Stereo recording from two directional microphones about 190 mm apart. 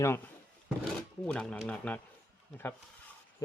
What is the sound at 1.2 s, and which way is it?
Speech, 5° left (ahead or behind).